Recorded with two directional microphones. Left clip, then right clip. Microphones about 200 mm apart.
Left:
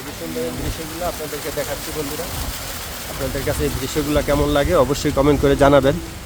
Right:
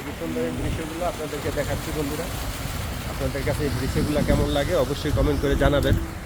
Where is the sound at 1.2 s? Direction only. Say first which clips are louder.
Left 2 dB; 60° left (ahead or behind).